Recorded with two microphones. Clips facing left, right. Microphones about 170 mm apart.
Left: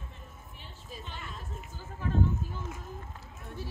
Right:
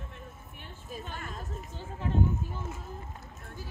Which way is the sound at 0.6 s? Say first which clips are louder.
Right 4 dB; 50° right (ahead or behind).